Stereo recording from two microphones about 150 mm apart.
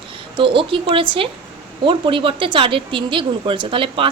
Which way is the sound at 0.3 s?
35° right (ahead or behind).